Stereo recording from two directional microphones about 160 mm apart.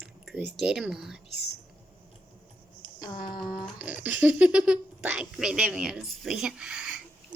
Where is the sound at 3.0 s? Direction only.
30° left (ahead or behind).